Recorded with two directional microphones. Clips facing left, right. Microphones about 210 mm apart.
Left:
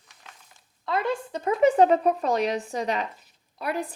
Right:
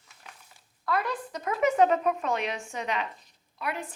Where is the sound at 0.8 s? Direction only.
25° left (ahead or behind).